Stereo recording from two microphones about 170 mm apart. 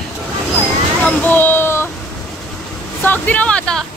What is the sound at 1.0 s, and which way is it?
Speech, 10° left (ahead or behind).